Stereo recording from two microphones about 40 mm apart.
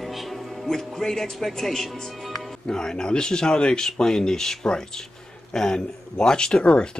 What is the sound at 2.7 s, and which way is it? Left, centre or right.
Speech, centre.